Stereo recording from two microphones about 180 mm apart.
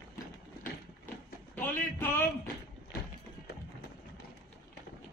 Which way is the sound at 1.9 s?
15° left (ahead or behind).